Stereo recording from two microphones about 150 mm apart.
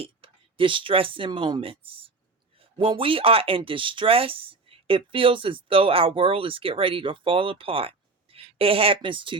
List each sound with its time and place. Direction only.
0.0 s speech: 35° right (ahead or behind)